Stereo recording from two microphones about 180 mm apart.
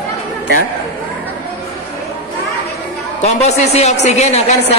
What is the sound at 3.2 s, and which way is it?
A woman's voice, 40° left (ahead or behind).